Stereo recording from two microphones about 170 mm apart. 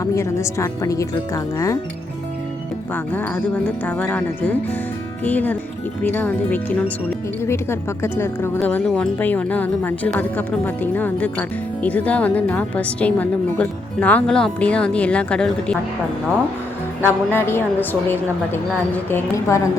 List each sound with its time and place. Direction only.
0.0 s speech: 20° left (ahead or behind)
2.9 s a woman's voice: 10° left (ahead or behind)
17.0 s a woman's voice: 15° left (ahead or behind)